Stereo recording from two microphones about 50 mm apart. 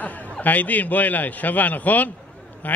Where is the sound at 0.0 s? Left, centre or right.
Left.